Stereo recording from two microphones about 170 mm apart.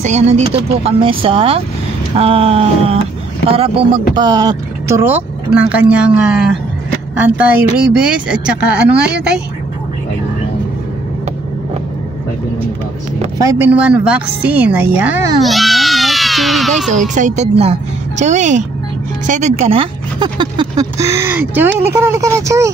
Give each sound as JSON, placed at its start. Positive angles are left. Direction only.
{"t": 0.0, "sound": "speech", "side_deg": -40}
{"t": 13.4, "sound": "speech", "side_deg": -15}
{"t": 13.7, "sound": "a child's voice", "side_deg": -5}
{"t": 17.1, "sound": "speech", "side_deg": -45}